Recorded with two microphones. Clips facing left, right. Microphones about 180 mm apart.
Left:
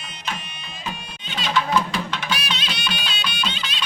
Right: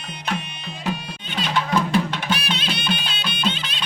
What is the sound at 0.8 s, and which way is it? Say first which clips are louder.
Music: right 6 dB; 55° right (ahead or behind).